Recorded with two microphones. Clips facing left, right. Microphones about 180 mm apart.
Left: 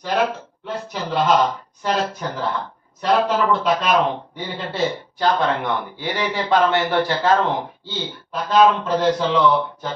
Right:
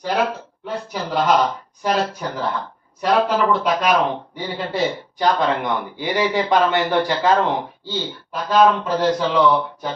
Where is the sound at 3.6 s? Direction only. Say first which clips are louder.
Even; 10° right (ahead or behind).